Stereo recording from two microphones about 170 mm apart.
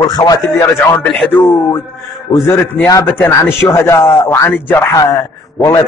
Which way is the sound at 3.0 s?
10° left (ahead or behind).